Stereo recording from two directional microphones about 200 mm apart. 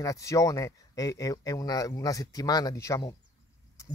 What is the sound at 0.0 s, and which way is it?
Speech, 15° left (ahead or behind).